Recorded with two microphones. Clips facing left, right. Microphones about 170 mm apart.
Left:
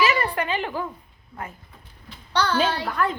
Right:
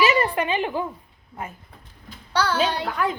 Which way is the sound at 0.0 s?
25° right (ahead or behind).